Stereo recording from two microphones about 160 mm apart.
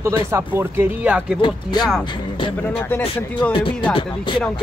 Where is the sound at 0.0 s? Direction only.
20° right (ahead or behind).